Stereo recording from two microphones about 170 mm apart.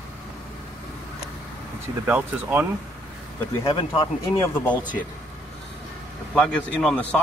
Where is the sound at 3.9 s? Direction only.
15° left (ahead or behind).